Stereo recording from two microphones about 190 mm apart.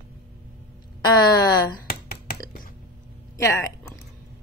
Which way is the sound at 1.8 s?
50° left (ahead or behind).